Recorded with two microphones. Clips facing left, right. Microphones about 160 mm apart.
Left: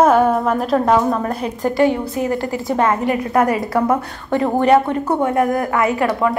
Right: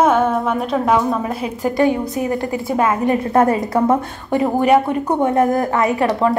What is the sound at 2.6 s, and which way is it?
Speech, 10° right (ahead or behind).